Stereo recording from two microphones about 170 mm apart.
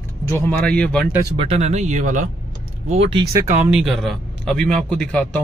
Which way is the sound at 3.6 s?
5° right (ahead or behind).